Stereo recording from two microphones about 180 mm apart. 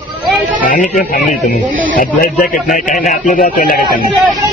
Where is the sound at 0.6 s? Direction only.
45° left (ahead or behind).